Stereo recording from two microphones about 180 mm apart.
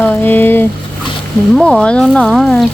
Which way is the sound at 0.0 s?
10° left (ahead or behind).